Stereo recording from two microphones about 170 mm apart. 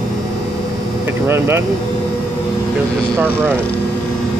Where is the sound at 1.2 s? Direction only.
15° right (ahead or behind).